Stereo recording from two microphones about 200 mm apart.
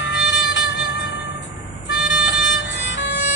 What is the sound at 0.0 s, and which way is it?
Music, 60° left (ahead or behind).